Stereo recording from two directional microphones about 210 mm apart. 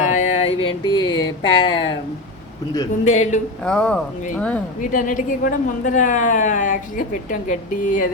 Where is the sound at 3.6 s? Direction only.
5° left (ahead or behind).